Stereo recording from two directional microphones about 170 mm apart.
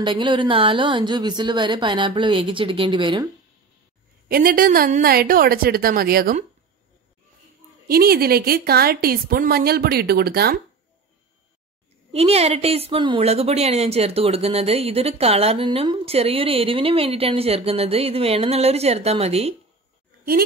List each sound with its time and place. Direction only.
0.0 s a woman's voice: 30° right (ahead or behind)
4.3 s a woman's voice: 60° right (ahead or behind)
7.9 s a woman's voice: 65° right (ahead or behind)
12.1 s a woman's voice: 35° right (ahead or behind)